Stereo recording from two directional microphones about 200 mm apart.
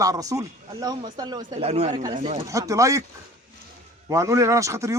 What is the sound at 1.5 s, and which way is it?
Speech, 35° right (ahead or behind).